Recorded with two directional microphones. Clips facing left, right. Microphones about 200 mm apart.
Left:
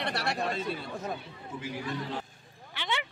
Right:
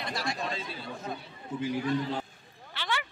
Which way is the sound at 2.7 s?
20° left (ahead or behind).